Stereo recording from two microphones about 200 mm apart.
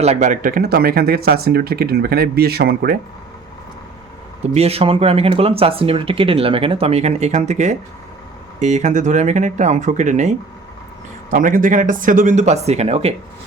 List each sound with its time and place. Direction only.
0.0 s speech: 35° right (ahead or behind); by 3.0 s 50° right (ahead or behind)
4.5 s speech: 30° right (ahead or behind)